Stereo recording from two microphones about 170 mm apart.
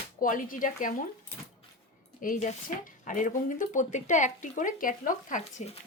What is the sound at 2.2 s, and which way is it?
Speech, 50° left (ahead or behind).